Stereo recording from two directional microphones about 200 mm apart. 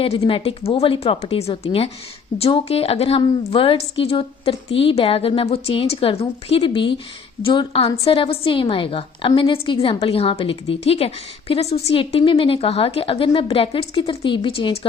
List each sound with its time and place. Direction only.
0.0 s a woman's voice: 30° left (ahead or behind)